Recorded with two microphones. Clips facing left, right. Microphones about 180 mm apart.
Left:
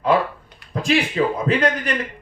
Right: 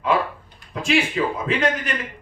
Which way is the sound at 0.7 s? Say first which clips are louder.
Left 3 dB; 35° left (ahead or behind).